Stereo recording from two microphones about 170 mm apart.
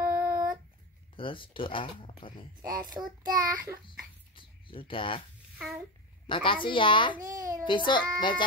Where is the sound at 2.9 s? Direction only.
25° right (ahead or behind).